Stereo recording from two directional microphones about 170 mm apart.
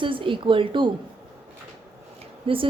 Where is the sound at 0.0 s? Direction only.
30° right (ahead or behind).